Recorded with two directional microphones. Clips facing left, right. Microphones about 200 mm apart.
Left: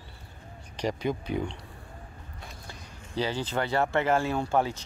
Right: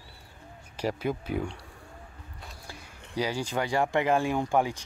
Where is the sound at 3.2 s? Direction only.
10° right (ahead or behind).